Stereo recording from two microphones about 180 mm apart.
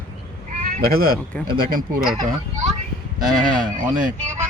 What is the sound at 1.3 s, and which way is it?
Speech, 5° left (ahead or behind).